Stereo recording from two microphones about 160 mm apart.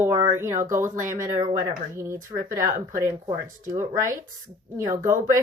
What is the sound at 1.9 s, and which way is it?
Speech, 20° right (ahead or behind).